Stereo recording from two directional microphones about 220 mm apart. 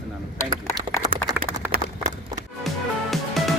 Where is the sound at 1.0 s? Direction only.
20° right (ahead or behind).